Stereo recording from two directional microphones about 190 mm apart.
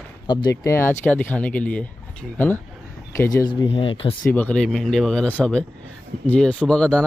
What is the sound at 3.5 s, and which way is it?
Speech, 25° left (ahead or behind).